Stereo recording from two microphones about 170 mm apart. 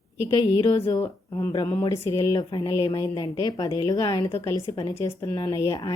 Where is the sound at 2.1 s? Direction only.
25° left (ahead or behind).